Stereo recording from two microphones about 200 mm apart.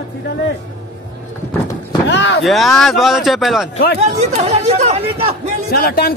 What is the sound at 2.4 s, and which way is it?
Speech, centre (ahead or behind).